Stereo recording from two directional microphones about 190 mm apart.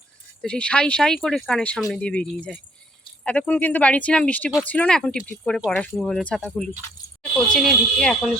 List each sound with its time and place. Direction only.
0.4 s speech: 5° left (ahead or behind)